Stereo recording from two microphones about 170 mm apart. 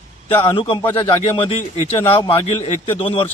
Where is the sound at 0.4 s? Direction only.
30° left (ahead or behind).